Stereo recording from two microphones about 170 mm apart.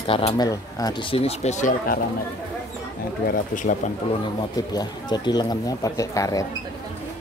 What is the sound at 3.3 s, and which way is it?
Speech, 50° left (ahead or behind).